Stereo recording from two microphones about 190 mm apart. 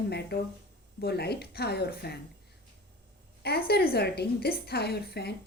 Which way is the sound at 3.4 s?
55° left (ahead or behind).